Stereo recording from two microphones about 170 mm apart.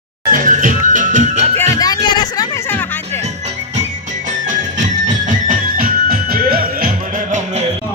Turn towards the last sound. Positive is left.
turn(degrees=-45)  # may be behind; listen again after turning